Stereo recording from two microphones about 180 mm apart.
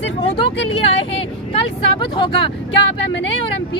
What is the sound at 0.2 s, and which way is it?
Speech, 30° left (ahead or behind).